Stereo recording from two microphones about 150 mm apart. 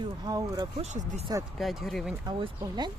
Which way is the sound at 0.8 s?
50° right (ahead or behind).